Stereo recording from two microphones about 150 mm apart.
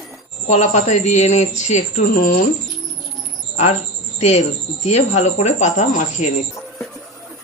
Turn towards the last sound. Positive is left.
turn(degrees=50)  # may be behind; listen again after turning